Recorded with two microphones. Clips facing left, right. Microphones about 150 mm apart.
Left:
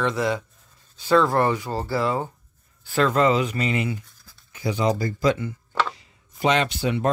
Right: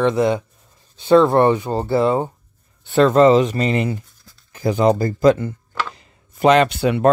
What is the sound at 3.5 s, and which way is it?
Speech, 40° right (ahead or behind).